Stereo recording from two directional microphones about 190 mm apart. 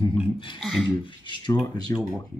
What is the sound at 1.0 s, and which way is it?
Speech, 25° left (ahead or behind).